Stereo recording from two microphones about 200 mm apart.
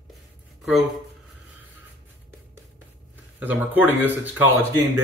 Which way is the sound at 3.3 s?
10° right (ahead or behind).